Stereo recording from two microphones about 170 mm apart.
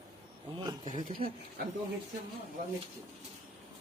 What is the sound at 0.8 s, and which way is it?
Speech, 45° right (ahead or behind).